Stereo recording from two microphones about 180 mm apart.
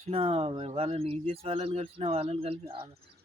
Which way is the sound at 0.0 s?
35° right (ahead or behind).